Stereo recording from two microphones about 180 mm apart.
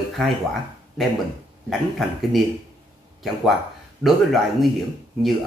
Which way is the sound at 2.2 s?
Centre (ahead or behind).